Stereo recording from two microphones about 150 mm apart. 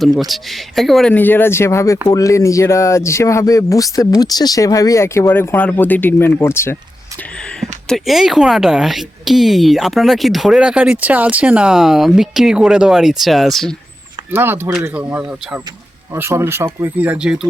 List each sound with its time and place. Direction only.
0.0 s a woman's voice: centre (ahead or behind); by 6.7 s 15° left (ahead or behind)
7.6 s a woman's voice: centre (ahead or behind)
14.3 s speech: 15° right (ahead or behind)